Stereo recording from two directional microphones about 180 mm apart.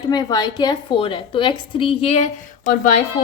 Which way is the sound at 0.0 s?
20° left (ahead or behind).